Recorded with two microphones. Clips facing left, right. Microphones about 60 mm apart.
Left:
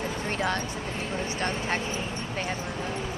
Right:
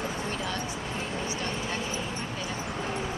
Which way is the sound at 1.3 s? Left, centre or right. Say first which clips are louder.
Left 3 dB; left.